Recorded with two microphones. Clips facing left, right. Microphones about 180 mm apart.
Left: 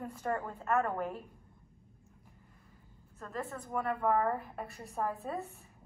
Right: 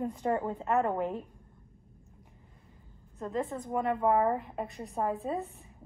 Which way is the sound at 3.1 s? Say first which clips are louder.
Right 7 dB; 20° right (ahead or behind).